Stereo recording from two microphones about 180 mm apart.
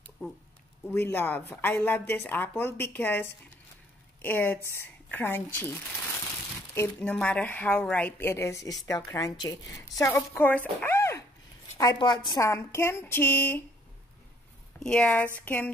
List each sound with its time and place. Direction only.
0.8 s a woman's voice: 10° left (ahead or behind)
14.8 s a woman's voice: 5° left (ahead or behind)